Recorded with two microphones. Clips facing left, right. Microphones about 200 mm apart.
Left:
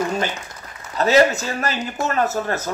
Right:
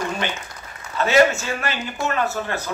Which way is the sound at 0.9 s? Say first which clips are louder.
Left 1 dB; 40° left (ahead or behind).